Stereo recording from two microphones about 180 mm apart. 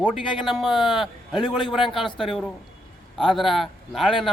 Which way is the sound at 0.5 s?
Centre (ahead or behind).